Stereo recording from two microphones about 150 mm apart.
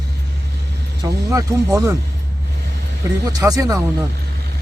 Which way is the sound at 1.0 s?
20° right (ahead or behind).